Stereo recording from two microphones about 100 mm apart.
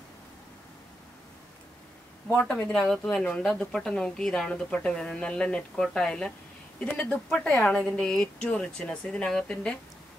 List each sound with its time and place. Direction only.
2.3 s speech: 10° left (ahead or behind)